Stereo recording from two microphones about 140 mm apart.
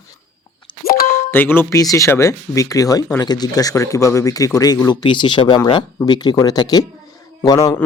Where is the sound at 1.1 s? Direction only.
15° left (ahead or behind).